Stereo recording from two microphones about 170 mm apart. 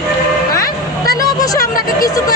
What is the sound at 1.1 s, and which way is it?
Vehicle, 20° left (ahead or behind).